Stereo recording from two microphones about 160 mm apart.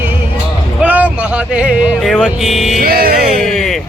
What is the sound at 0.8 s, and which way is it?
Speech, 10° right (ahead or behind).